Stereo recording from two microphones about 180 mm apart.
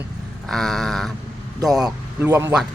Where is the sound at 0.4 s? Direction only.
Centre (ahead or behind).